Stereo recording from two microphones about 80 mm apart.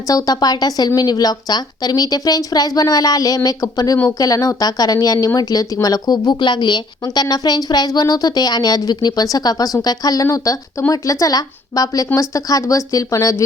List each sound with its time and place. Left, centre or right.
0.1 s a woman's voice: left